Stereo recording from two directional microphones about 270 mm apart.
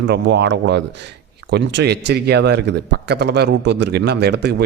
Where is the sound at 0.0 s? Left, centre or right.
Right.